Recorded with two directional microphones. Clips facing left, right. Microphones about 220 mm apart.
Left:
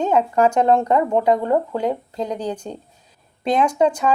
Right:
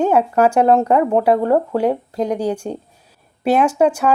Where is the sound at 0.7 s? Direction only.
35° right (ahead or behind).